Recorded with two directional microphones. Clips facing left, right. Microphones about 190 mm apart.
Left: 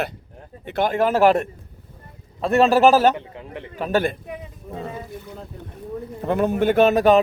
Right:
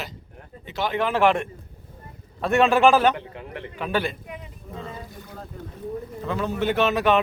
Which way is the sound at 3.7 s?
40° left (ahead or behind).